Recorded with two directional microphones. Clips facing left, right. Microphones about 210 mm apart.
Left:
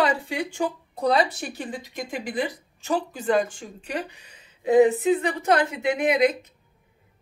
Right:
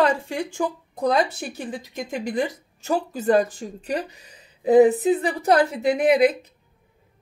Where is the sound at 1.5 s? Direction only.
45° right (ahead or behind).